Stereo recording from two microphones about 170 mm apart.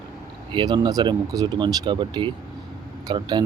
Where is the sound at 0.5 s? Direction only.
25° right (ahead or behind).